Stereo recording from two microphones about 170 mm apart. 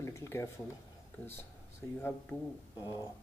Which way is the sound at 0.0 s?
15° left (ahead or behind).